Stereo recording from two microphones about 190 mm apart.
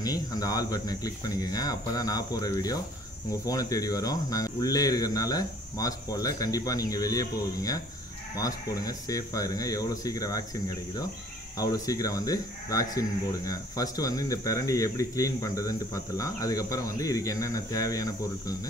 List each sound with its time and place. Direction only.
0.0 s speech: 20° left (ahead or behind)